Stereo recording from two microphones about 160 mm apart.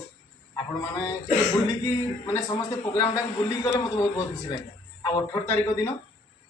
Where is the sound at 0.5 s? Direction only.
20° left (ahead or behind).